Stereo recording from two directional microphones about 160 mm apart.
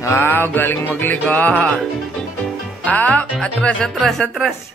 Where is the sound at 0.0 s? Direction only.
15° left (ahead or behind).